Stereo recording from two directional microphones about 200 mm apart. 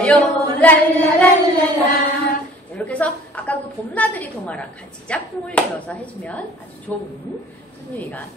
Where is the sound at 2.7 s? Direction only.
5° left (ahead or behind).